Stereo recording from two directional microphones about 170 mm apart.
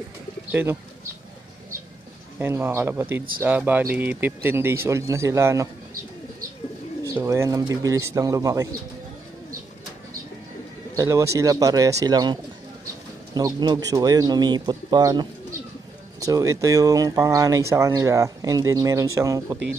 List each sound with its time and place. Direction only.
0.5 s speech: 15° right (ahead or behind)
2.3 s a man's voice: 15° right (ahead or behind)
7.0 s speech: 20° right (ahead or behind)
11.0 s speech: 15° right (ahead or behind)